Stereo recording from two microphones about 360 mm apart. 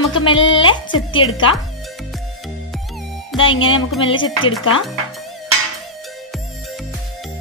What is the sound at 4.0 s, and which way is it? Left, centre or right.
Music, centre.